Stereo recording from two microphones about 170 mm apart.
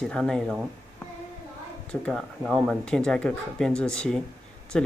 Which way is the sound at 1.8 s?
5° left (ahead or behind).